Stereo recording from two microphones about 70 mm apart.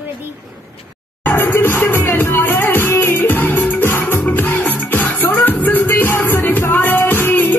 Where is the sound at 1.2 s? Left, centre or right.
Left.